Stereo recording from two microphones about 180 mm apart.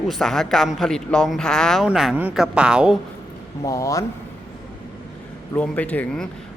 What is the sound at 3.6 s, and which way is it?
Speech, 20° left (ahead or behind).